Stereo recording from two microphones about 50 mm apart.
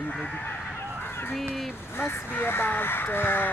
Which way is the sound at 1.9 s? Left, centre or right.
Left.